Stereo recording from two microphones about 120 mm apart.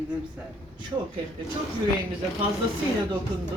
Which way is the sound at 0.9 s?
35° right (ahead or behind).